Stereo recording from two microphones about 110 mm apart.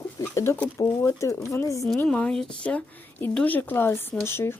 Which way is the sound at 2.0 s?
10° left (ahead or behind).